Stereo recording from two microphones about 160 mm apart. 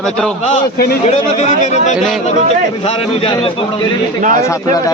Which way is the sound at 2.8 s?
35° left (ahead or behind).